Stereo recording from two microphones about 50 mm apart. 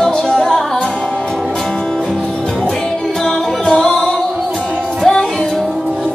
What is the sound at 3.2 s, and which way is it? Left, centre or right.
Music, centre.